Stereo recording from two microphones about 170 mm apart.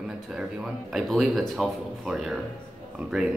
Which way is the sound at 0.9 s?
Centre (ahead or behind).